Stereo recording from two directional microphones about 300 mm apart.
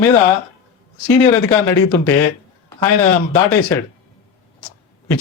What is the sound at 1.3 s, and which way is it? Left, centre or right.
Speech, centre.